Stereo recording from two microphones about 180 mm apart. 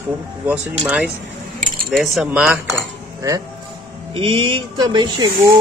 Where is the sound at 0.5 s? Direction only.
5° right (ahead or behind).